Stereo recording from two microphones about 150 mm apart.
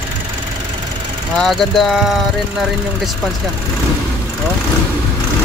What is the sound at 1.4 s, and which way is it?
Speech, centre (ahead or behind).